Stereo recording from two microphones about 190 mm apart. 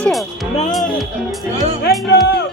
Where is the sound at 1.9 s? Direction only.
55° left (ahead or behind).